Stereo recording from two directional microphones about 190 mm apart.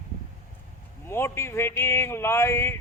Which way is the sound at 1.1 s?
15° left (ahead or behind).